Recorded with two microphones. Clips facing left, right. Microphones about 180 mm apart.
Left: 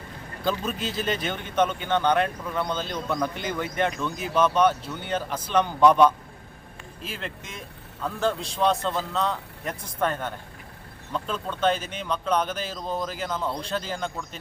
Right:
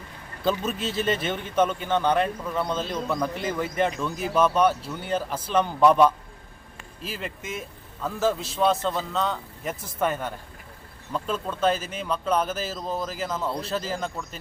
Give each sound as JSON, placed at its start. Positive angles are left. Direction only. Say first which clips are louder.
{"t": 0.8, "sound": "speech", "louder": "right 2 dB", "side_deg": -30}
{"t": 1.0, "sound": "speech", "louder": "right 3 dB", "side_deg": -5}